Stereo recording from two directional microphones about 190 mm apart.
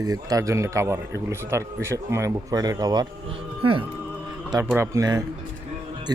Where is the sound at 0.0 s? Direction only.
20° right (ahead or behind).